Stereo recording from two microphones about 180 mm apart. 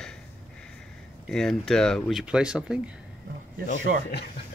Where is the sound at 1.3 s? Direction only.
Centre (ahead or behind).